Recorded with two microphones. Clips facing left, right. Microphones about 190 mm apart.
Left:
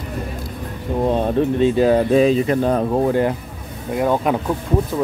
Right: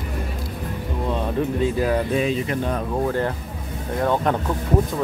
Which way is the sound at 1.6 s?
25° left (ahead or behind).